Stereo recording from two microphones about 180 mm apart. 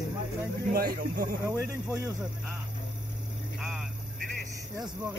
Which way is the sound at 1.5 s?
15° right (ahead or behind).